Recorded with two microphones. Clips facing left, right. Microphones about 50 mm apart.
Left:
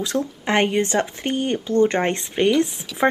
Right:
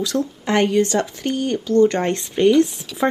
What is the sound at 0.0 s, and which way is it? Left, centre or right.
Speech, left.